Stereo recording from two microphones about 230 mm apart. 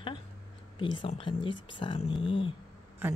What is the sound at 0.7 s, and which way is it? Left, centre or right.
Speech, left.